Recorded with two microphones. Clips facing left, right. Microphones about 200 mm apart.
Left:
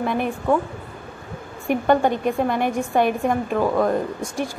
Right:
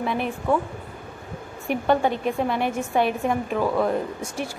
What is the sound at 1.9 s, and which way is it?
Speech, 5° right (ahead or behind).